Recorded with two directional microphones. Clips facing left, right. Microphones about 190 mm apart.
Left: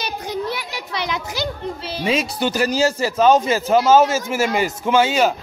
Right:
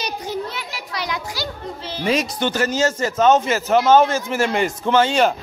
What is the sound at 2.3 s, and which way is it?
A man's voice, 10° left (ahead or behind).